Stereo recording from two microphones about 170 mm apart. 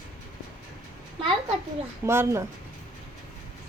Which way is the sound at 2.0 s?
15° right (ahead or behind).